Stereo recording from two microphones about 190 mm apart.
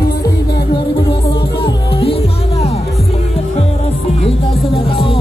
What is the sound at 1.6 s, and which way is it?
Music, 30° left (ahead or behind).